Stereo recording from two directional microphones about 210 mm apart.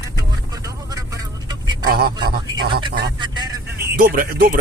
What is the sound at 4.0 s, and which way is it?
Speech, 45° right (ahead or behind).